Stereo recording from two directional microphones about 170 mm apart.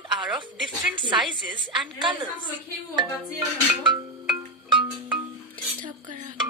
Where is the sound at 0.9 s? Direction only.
30° right (ahead or behind).